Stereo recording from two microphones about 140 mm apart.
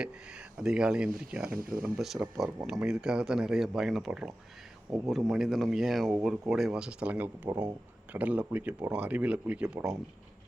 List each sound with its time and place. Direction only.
0.5 s speech: 5° right (ahead or behind)
1.5 s speech: 90° right
1.8 s speech: 5° right (ahead or behind)